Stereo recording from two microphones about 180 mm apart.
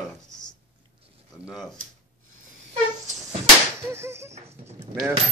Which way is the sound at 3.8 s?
15° right (ahead or behind).